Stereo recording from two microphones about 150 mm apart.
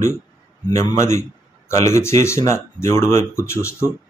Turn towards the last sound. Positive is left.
turn(degrees=20)  # may be behind; listen again after turning